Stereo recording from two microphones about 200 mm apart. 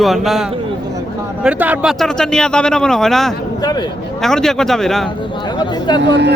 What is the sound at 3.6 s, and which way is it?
Speech, 20° left (ahead or behind).